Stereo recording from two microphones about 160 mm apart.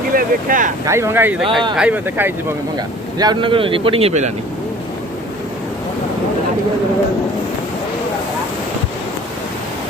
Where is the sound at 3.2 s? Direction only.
30° right (ahead or behind).